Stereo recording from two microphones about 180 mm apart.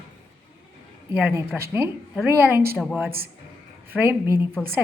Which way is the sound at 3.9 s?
10° right (ahead or behind).